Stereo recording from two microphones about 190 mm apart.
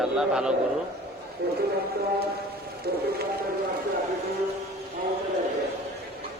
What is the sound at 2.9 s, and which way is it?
Speech, 55° right (ahead or behind).